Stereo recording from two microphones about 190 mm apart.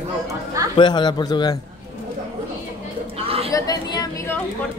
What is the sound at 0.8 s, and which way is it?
Speech, 25° left (ahead or behind).